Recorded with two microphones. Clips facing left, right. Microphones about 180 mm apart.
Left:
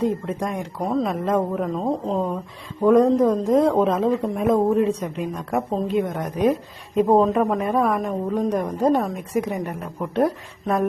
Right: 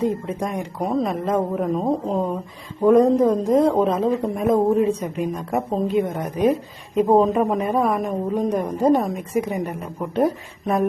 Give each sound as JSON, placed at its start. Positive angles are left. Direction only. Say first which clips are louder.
{"t": 0.0, "sound": "a woman's voice", "louder": "even", "side_deg": 0}
{"t": 1.7, "sound": "a woman's voice", "louder": "right 2 dB", "side_deg": -15}
{"t": 8.9, "sound": "speech", "louder": "right 3 dB", "side_deg": -10}
{"t": 9.1, "sound": "a woman's voice", "louder": "right 1 dB", "side_deg": 0}